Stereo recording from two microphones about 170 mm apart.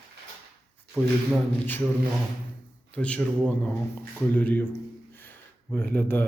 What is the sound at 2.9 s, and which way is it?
Speech, 5° left (ahead or behind).